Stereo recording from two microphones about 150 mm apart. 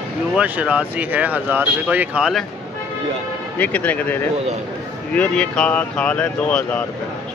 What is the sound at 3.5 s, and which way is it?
Speech, 10° left (ahead or behind).